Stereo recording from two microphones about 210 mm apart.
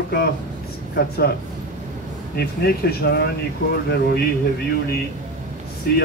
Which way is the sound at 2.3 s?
45° left (ahead or behind).